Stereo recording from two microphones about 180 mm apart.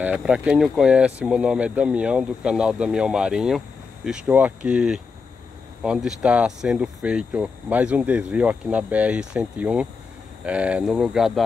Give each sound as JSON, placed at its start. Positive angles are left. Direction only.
{"t": 0.0, "sound": "speech", "side_deg": -5}